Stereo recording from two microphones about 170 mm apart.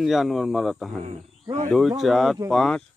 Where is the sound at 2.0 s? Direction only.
Centre (ahead or behind).